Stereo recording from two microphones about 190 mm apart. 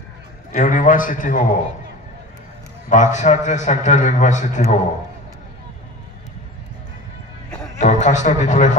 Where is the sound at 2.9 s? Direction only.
40° left (ahead or behind).